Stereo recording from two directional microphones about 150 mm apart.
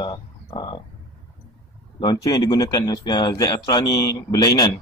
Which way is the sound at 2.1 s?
25° left (ahead or behind).